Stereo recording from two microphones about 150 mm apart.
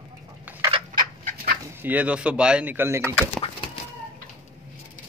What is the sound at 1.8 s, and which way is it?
Speech, 10° right (ahead or behind).